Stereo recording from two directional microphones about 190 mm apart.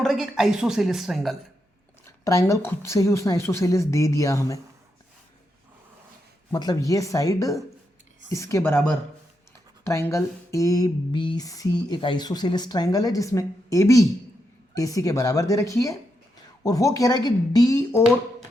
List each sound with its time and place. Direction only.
0.0 s speech: centre (ahead or behind)
2.0 s a woman's voice: 15° left (ahead or behind)
6.5 s a woman's voice: 20° left (ahead or behind)
9.8 s a sound: 15° left (ahead or behind)
14.8 s a woman's voice: 20° left (ahead or behind)